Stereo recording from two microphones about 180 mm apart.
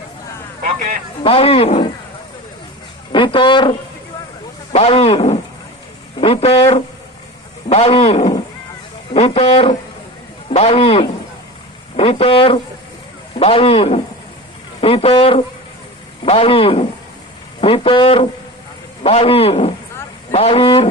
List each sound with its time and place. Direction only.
0.6 s a sound: 45° right (ahead or behind)
1.2 s speech: 30° left (ahead or behind)
3.1 s speech: 25° left (ahead or behind)